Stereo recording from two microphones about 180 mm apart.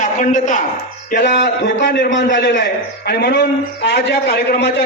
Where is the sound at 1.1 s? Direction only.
70° left (ahead or behind).